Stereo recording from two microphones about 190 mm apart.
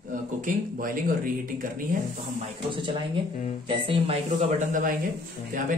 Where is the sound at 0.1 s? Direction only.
45° right (ahead or behind).